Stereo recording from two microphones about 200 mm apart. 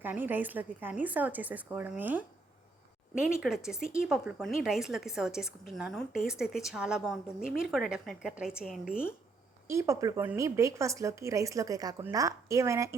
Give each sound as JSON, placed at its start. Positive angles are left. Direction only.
{"t": 0.0, "sound": "a woman's voice", "side_deg": -10}
{"t": 9.6, "sound": "a woman's voice", "side_deg": -15}